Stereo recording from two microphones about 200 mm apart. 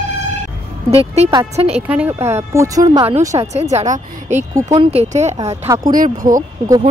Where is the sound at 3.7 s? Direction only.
35° right (ahead or behind).